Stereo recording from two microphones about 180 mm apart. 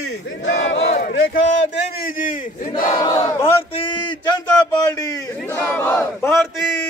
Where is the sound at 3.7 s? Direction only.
25° left (ahead or behind).